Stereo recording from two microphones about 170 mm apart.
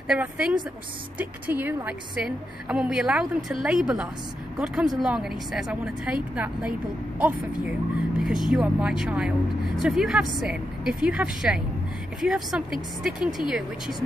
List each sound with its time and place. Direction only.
0.1 s a woman's voice: 5° right (ahead or behind)